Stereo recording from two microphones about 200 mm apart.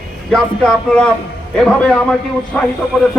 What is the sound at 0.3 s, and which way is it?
A man's voice, 5° left (ahead or behind).